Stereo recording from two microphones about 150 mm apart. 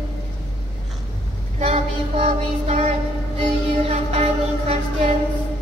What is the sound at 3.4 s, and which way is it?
Music, 45° right (ahead or behind).